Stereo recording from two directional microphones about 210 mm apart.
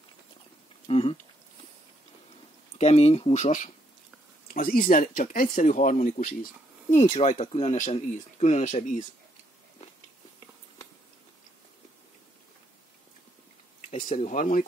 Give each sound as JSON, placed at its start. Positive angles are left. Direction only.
{"t": 0.8, "sound": "speech", "side_deg": 25}
{"t": 2.8, "sound": "speech", "side_deg": 30}
{"t": 13.7, "sound": "speech", "side_deg": 35}